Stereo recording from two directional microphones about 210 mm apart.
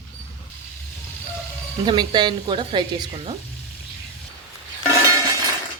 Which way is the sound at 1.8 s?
20° right (ahead or behind).